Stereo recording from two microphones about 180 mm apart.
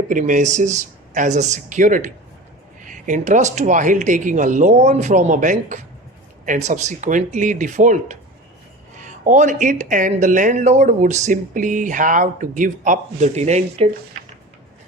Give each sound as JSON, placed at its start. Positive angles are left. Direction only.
{"t": 0.1, "sound": "speech", "side_deg": -45}